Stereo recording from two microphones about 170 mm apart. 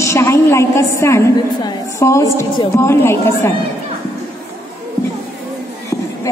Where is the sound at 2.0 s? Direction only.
15° left (ahead or behind).